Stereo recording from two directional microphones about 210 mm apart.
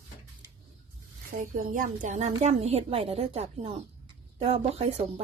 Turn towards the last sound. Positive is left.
turn(degrees=-30)  # may be behind; listen again after turning